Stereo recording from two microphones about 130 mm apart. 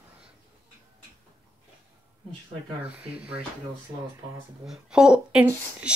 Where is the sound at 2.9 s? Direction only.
10° right (ahead or behind).